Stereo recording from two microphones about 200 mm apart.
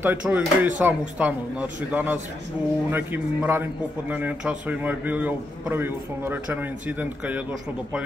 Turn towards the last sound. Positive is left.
turn(degrees=-10)  # may be behind; listen again after turning